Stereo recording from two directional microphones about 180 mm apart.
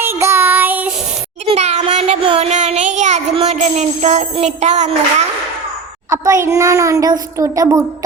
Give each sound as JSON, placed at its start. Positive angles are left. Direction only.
{"t": 0.0, "sound": "child singing", "side_deg": -15}
{"t": 1.5, "sound": "child singing", "side_deg": -40}
{"t": 6.1, "sound": "a child's voice", "side_deg": -15}